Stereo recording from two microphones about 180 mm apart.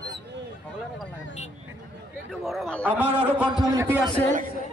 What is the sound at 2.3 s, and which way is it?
Speech, centre (ahead or behind).